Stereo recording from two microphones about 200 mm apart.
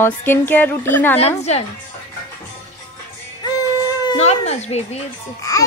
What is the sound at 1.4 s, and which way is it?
Speech, 30° left (ahead or behind).